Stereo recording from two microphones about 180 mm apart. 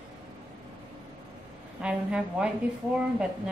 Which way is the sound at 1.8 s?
5° right (ahead or behind).